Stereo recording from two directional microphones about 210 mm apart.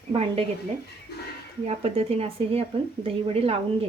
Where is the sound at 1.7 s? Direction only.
30° right (ahead or behind).